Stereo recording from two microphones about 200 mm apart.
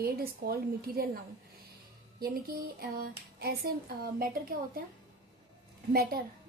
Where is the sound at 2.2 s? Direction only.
50° right (ahead or behind).